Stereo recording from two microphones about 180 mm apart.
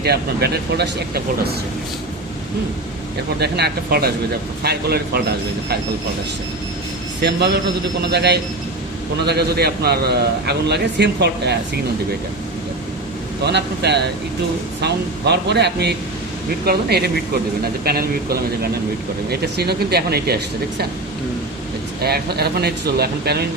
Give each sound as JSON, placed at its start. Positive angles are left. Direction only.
{"t": 0.0, "sound": "speech", "side_deg": -65}
{"t": 3.4, "sound": "speech", "side_deg": -60}
{"t": 7.2, "sound": "a man's voice", "side_deg": -70}
{"t": 13.4, "sound": "a man's voice", "side_deg": -70}
{"t": 22.0, "sound": "speech", "side_deg": -60}